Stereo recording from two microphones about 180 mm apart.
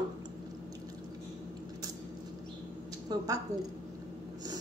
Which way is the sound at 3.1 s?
20° right (ahead or behind).